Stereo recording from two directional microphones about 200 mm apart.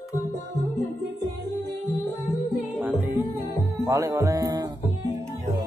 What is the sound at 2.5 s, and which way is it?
Music, 10° right (ahead or behind).